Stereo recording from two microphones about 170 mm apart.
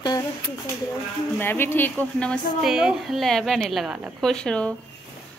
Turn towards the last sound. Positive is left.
turn(degrees=5)  # may be behind; listen again after turning